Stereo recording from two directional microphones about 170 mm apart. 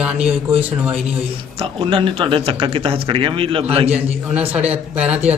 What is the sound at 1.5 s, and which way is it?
A man's voice, 30° right (ahead or behind).